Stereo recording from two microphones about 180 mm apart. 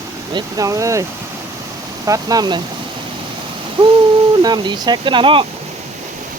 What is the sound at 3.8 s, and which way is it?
Speech, 25° right (ahead or behind).